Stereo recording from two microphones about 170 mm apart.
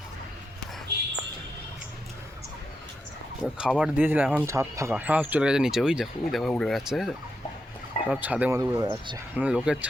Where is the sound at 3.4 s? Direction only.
Centre (ahead or behind); by 9.1 s 20° right (ahead or behind).